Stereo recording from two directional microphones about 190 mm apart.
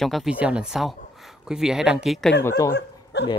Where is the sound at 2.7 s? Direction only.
65° left (ahead or behind).